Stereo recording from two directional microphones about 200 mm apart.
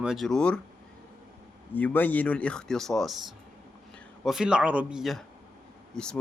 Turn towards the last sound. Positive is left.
turn(degrees=5)  # may be behind; listen again after turning